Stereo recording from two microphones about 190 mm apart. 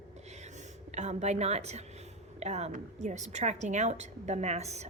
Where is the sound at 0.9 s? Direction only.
35° right (ahead or behind).